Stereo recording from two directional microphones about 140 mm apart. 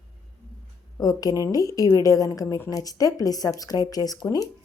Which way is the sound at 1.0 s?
25° left (ahead or behind).